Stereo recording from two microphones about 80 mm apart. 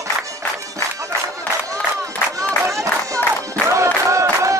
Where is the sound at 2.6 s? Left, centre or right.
Right.